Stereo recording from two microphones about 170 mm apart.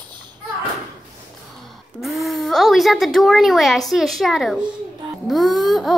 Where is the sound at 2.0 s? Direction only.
Centre (ahead or behind).